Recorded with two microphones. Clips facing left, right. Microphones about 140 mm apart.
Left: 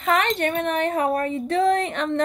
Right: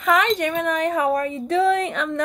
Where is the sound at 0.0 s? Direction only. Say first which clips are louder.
Right 2 dB; 30° left (ahead or behind).